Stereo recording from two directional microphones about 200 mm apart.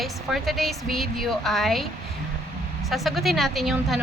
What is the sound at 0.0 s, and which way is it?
A woman's voice, centre (ahead or behind).